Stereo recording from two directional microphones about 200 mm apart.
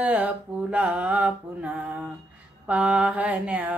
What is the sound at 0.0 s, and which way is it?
Mantra, 5° right (ahead or behind).